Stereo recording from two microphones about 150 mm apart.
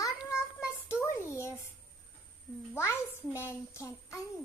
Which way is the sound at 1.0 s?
15° left (ahead or behind).